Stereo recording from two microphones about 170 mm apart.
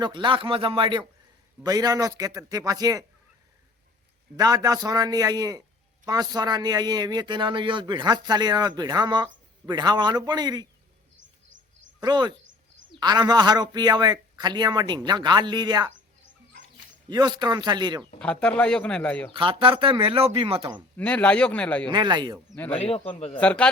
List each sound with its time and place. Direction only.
0.0 s a man's voice: 30° right (ahead or behind)
4.4 s a man's voice: 20° right (ahead or behind)
12.0 s a man's voice: 25° right (ahead or behind)
17.1 s a man's voice: 25° right (ahead or behind)
18.2 s speech: 5° left (ahead or behind)
19.3 s speech: 30° right (ahead or behind)
20.9 s speech: 5° left (ahead or behind)
21.8 s a man's voice: 25° right (ahead or behind)
22.7 s speech: 35° left (ahead or behind)
23.4 s speech: 5° left (ahead or behind)